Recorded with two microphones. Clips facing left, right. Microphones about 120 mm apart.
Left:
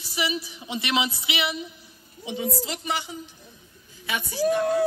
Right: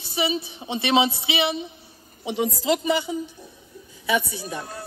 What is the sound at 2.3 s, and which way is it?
Speech, 80° right.